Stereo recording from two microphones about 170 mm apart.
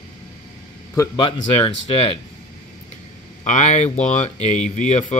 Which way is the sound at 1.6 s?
30° left (ahead or behind).